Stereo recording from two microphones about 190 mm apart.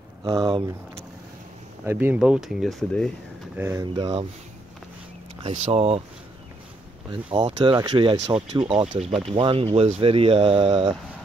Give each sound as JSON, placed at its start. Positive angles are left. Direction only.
{"t": 0.5, "sound": "speech", "side_deg": -25}
{"t": 1.9, "sound": "speech", "side_deg": -10}
{"t": 3.5, "sound": "speech", "side_deg": -10}
{"t": 5.4, "sound": "speech", "side_deg": -35}
{"t": 7.1, "sound": "speech", "side_deg": -25}
{"t": 8.8, "sound": "speech", "side_deg": -40}
{"t": 9.3, "sound": "speech", "side_deg": -25}